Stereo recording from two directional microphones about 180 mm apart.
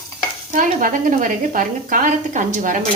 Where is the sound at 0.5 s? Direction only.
45° right (ahead or behind).